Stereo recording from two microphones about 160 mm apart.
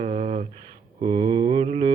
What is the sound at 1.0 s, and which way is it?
Mantra, 35° right (ahead or behind).